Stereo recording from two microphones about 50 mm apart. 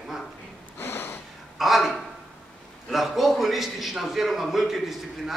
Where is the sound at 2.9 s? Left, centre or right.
Centre.